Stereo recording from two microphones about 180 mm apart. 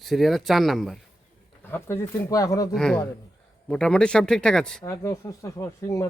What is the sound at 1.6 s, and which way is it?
Speech, 15° left (ahead or behind).